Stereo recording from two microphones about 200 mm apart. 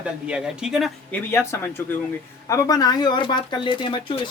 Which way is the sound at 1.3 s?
10° left (ahead or behind).